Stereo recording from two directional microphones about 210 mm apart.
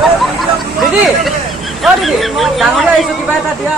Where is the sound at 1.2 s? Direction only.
Centre (ahead or behind).